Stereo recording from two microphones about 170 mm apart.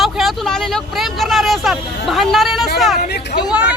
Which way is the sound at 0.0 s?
Centre (ahead or behind).